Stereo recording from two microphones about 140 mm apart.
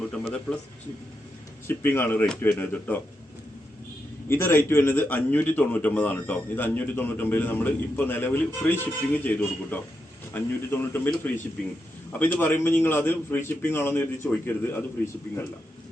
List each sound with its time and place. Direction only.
1.6 s a man's voice: 15° left (ahead or behind)
4.3 s a man's voice: 15° left (ahead or behind)